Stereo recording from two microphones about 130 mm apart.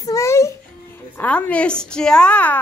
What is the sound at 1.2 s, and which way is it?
A woman's voice, 10° left (ahead or behind).